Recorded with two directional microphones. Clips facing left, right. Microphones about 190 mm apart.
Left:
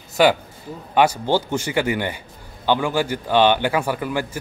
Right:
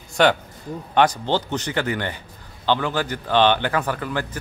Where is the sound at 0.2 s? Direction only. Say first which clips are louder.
Left 2 dB; 5° left (ahead or behind).